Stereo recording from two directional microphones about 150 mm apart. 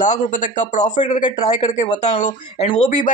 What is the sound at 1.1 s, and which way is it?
A man's voice, 50° left (ahead or behind).